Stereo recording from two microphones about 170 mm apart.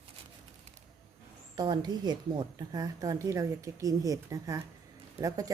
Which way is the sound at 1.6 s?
25° right (ahead or behind).